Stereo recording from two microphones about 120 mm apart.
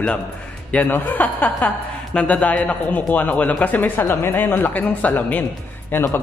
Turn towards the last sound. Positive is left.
turn(degrees=20)  # may be behind; listen again after turning